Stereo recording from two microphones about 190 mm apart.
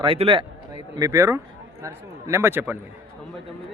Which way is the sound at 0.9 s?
15° right (ahead or behind).